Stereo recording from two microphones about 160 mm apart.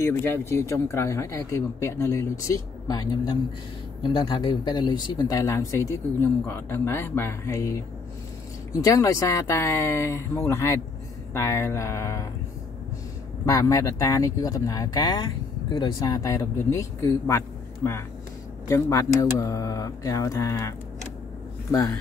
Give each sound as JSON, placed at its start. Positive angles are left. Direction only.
{"t": 0.0, "sound": "speech", "side_deg": 15}
{"t": 8.7, "sound": "speech", "side_deg": 20}
{"t": 13.5, "sound": "speech", "side_deg": 20}